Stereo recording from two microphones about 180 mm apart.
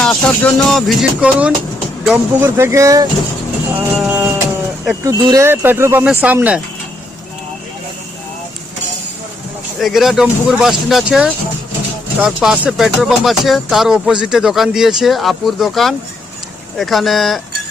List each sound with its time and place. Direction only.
0.0 s speech: 5° left (ahead or behind); by 3.1 s 20° right (ahead or behind)
3.8 s speech: 5° right (ahead or behind)
5.0 s speech: 20° right (ahead or behind)
9.8 s speech: centre (ahead or behind)